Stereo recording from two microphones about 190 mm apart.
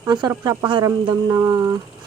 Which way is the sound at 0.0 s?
20° right (ahead or behind).